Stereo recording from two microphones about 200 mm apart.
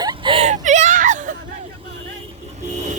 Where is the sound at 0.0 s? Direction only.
20° right (ahead or behind); by 1.2 s 40° right (ahead or behind).